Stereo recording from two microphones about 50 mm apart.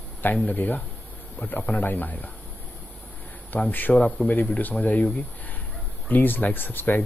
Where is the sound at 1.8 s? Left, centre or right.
Left.